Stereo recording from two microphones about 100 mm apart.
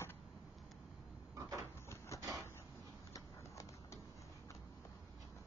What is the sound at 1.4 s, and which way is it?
Cupboard open or close, 30° right (ahead or behind).